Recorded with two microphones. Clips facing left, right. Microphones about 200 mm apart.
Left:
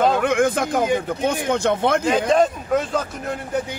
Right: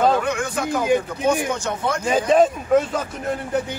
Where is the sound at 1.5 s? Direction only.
65° left (ahead or behind).